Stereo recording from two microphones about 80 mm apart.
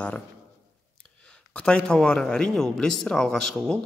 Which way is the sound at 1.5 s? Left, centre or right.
Centre.